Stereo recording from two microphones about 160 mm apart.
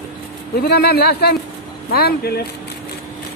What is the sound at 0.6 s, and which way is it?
Speech, 80° left.